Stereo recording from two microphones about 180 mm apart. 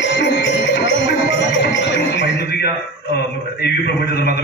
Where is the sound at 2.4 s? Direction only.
65° left (ahead or behind).